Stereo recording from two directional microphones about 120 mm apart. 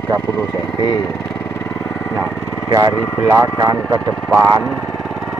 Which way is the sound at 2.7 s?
25° right (ahead or behind).